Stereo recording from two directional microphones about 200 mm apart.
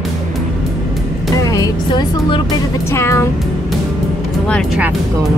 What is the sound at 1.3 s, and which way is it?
Music, 15° left (ahead or behind).